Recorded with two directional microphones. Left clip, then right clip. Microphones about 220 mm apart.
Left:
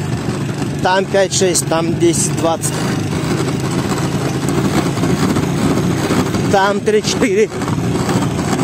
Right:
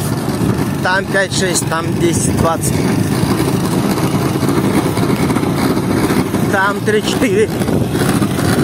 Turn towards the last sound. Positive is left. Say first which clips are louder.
# even
turn(degrees=30)  # may be behind; listen again after turning